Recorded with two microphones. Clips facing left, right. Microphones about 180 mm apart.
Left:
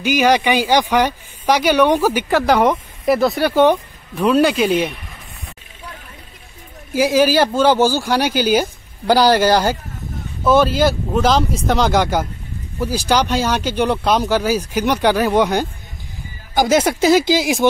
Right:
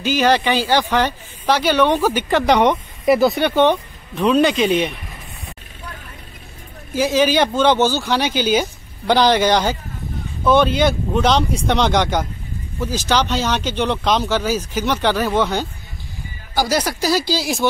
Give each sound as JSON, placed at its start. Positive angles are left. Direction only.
{"t": 0.0, "sound": "speech", "side_deg": 15}
{"t": 6.9, "sound": "speech", "side_deg": 10}